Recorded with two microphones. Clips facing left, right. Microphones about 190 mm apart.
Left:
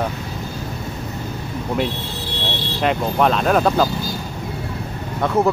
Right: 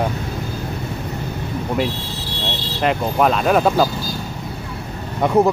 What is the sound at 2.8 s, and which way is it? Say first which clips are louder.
Speech: right 1 dB; centre (ahead or behind).